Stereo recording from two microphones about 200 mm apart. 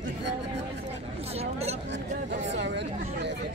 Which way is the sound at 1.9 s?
65° right (ahead or behind).